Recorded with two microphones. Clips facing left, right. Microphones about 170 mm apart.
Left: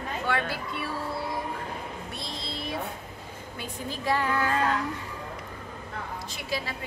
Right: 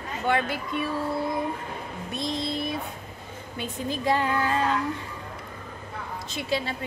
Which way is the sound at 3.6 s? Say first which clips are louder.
Right 4 dB; 20° right (ahead or behind).